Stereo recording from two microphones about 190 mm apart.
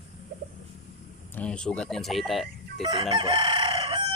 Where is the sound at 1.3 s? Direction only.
5° left (ahead or behind).